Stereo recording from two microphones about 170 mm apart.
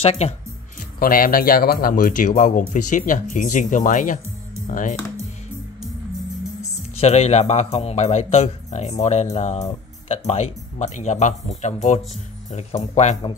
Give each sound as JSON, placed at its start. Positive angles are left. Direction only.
{"t": 0.0, "sound": "speech", "side_deg": 35}
{"t": 0.9, "sound": "speech", "side_deg": 55}
{"t": 7.0, "sound": "speech", "side_deg": 40}